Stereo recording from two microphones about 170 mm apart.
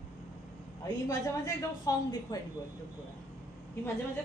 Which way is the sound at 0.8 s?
20° left (ahead or behind).